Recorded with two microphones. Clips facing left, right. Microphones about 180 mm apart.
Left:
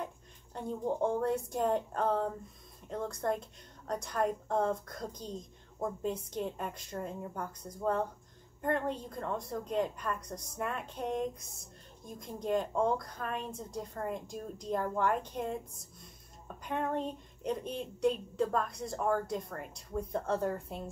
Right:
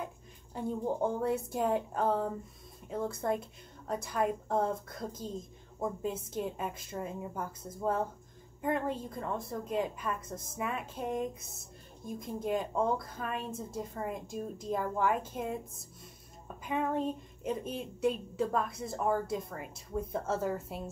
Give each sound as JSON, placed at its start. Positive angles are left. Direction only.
{"t": 0.6, "sound": "a woman's voice", "side_deg": -5}